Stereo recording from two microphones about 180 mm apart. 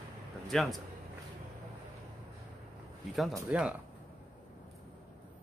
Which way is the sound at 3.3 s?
10° right (ahead or behind).